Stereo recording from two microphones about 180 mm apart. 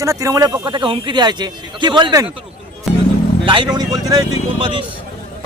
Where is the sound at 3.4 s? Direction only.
25° right (ahead or behind).